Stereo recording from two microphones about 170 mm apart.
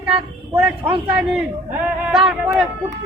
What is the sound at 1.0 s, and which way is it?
A woman's voice, 5° right (ahead or behind).